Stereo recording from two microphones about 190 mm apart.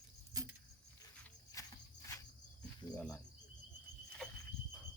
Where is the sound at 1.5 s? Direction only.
15° left (ahead or behind).